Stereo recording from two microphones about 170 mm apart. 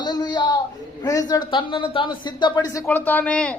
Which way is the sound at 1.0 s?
20° left (ahead or behind).